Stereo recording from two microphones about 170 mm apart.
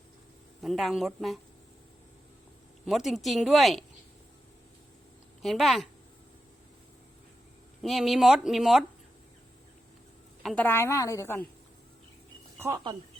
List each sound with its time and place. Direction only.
0.6 s speech: centre (ahead or behind)
2.8 s speech: centre (ahead or behind)
5.4 s speech: centre (ahead or behind)
7.8 s speech: centre (ahead or behind)
10.4 s a woman's voice: 10° left (ahead or behind)
12.5 s a sound: 15° right (ahead or behind)